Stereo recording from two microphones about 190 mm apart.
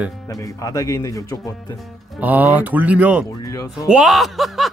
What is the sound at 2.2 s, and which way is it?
Speech, 10° right (ahead or behind).